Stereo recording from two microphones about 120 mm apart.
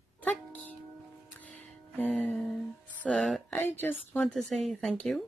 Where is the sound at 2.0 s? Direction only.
15° left (ahead or behind).